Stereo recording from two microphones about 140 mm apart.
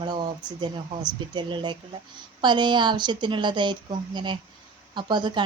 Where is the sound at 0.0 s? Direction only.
35° right (ahead or behind).